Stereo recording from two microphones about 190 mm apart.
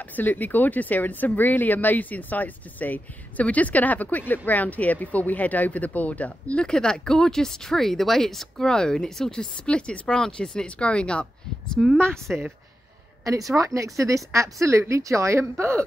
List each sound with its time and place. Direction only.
0.0 s a woman's voice: 10° left (ahead or behind)
13.2 s a woman's voice: 15° right (ahead or behind)